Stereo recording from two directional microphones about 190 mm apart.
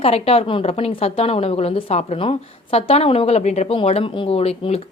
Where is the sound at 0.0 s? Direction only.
30° left (ahead or behind).